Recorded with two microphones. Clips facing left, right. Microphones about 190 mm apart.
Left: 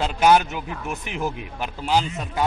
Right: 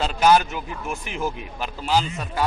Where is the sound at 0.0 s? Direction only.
15° left (ahead or behind).